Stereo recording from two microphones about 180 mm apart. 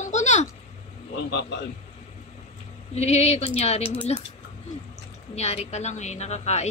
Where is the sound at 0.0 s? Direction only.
40° left (ahead or behind).